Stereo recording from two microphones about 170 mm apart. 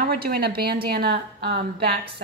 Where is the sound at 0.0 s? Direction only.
60° right (ahead or behind).